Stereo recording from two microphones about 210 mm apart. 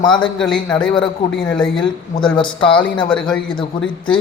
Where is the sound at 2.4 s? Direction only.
20° left (ahead or behind).